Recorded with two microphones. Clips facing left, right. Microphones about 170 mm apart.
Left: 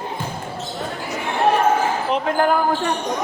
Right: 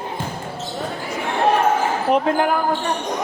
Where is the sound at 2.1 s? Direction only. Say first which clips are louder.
Right 8 dB; 55° right (ahead or behind).